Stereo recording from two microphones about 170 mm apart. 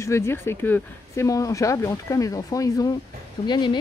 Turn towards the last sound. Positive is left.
turn(degrees=25)  # may be behind; listen again after turning